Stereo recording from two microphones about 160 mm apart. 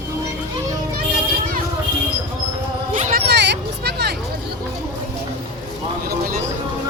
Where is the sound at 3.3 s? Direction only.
90° right.